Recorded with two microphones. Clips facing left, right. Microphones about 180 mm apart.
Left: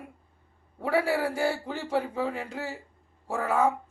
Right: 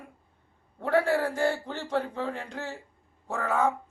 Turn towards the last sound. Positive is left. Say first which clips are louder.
# left 2 dB
turn(degrees=10)  # may be behind; listen again after turning